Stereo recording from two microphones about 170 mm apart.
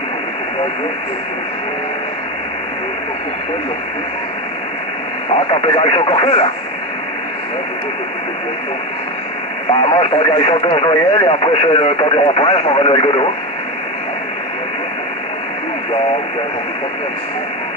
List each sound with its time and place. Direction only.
5.5 s speech: 30° left (ahead or behind)
9.7 s speech: 30° left (ahead or behind)